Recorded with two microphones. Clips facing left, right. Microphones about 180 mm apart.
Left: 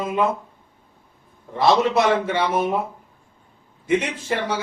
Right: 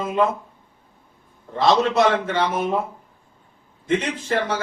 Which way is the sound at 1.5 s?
10° left (ahead or behind).